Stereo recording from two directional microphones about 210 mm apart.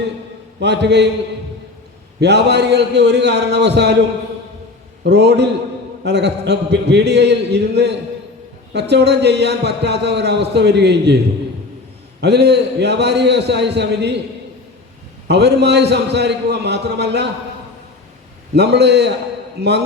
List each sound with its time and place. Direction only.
0.6 s a man's voice: 55° right (ahead or behind)
2.2 s a man's voice: 55° right (ahead or behind)
5.0 s a man's voice: 55° right (ahead or behind)
12.2 s a man's voice: 50° right (ahead or behind)
15.3 s a man's voice: 50° right (ahead or behind)
18.5 s a man's voice: 50° right (ahead or behind)